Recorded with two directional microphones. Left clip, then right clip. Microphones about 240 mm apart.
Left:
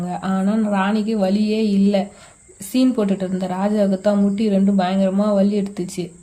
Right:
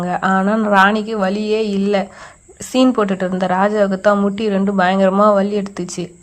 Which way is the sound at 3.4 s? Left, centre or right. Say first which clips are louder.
Right 5 dB; right.